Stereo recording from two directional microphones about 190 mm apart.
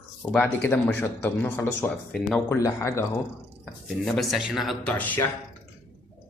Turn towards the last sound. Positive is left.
turn(degrees=10)  # may be behind; listen again after turning